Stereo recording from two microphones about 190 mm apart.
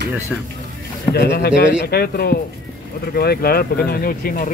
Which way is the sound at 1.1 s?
60° left (ahead or behind).